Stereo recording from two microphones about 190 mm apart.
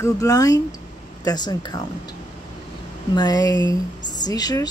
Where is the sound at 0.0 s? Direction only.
15° left (ahead or behind).